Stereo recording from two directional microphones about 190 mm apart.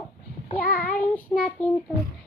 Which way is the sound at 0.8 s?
10° left (ahead or behind).